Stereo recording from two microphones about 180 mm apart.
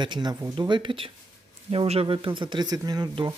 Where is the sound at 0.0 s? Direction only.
25° right (ahead or behind).